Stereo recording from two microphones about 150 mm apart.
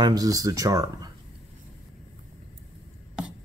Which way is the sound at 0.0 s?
25° right (ahead or behind).